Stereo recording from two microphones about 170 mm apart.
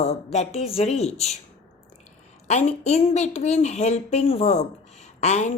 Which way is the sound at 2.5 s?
40° left (ahead or behind).